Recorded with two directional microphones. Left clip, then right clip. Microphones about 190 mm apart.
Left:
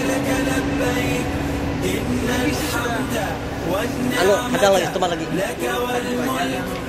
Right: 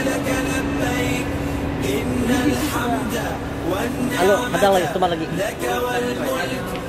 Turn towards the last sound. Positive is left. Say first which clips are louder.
# even
turn(degrees=-20)  # may be behind; listen again after turning